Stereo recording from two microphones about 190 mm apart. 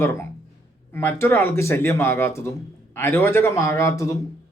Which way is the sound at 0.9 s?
15° left (ahead or behind).